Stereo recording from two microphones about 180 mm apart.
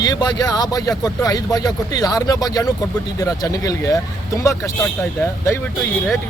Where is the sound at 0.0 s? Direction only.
20° left (ahead or behind).